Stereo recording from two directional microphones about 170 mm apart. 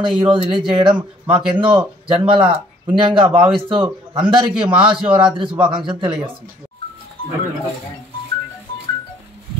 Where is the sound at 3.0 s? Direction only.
30° right (ahead or behind).